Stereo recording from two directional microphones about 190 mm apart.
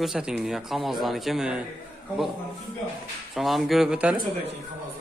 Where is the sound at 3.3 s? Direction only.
Centre (ahead or behind).